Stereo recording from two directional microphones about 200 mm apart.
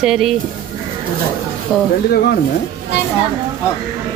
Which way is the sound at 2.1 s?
55° left (ahead or behind).